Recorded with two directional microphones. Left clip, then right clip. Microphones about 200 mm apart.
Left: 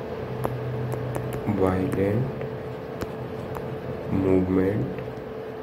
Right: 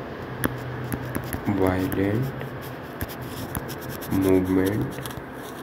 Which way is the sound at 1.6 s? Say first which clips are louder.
Left 1 dB; 10° right (ahead or behind).